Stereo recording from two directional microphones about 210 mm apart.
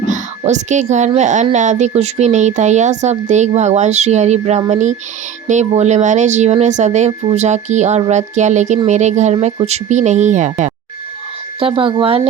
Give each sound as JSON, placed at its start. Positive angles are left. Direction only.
{"t": 0.1, "sound": "a child's voice", "side_deg": -35}
{"t": 11.6, "sound": "speech", "side_deg": -25}